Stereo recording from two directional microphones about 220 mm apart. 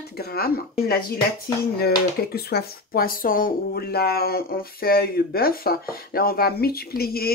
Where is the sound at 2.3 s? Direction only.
45° left (ahead or behind).